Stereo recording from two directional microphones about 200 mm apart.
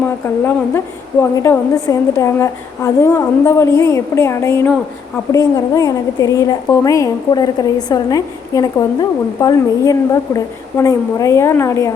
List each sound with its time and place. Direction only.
1.2 s a woman's voice: 15° left (ahead or behind)